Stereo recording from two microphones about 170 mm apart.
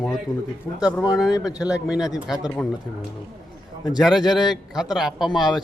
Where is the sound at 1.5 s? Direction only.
20° left (ahead or behind).